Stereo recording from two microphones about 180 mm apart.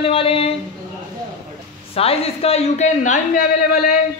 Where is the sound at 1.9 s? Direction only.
35° left (ahead or behind).